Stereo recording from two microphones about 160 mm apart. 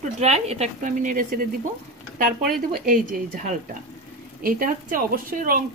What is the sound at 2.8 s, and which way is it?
A woman's voice, 55° right (ahead or behind).